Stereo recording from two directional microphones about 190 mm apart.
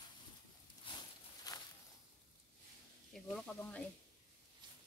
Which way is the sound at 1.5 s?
20° left (ahead or behind).